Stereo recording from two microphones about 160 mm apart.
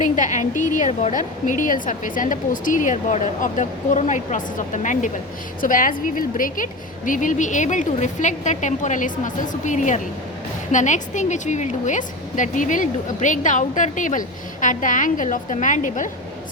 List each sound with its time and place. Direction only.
0.0 s a woman's voice: 50° left (ahead or behind)